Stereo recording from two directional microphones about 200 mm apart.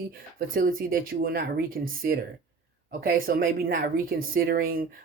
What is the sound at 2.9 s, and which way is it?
Speech, 45° right (ahead or behind).